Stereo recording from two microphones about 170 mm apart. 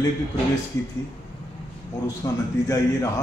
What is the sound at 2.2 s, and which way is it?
Speech, 20° left (ahead or behind).